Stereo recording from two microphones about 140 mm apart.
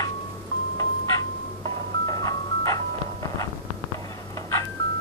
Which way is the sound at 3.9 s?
25° left (ahead or behind).